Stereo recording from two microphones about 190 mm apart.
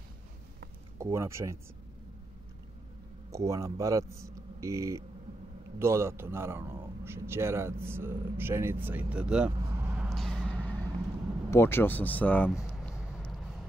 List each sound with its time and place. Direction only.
0.9 s a man's voice: 15° right (ahead or behind)
3.3 s a man's voice: 15° right (ahead or behind)
9.6 s vehicle: 15° right (ahead or behind)
10.0 s vehicle: centre (ahead or behind)
11.5 s speech: 10° left (ahead or behind)
12.4 s a sound: 5° right (ahead or behind)
13.2 s vehicle: centre (ahead or behind)